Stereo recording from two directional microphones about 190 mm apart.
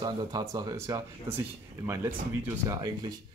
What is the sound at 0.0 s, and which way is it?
Speech, 20° right (ahead or behind).